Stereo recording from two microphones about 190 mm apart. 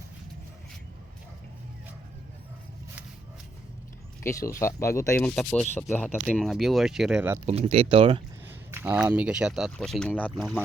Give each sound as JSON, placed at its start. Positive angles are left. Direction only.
{"t": 4.2, "sound": "speech", "side_deg": 15}
{"t": 7.4, "sound": "speech", "side_deg": -35}
{"t": 8.7, "sound": "speech", "side_deg": -10}